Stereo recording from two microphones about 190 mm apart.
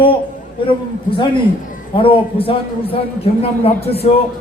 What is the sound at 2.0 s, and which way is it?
A man's voice, 30° left (ahead or behind).